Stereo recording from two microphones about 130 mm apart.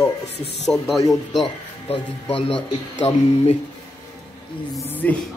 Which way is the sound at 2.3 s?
45° left (ahead or behind).